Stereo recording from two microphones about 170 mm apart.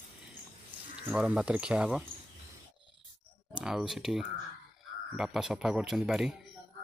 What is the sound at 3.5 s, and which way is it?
Speech, centre (ahead or behind).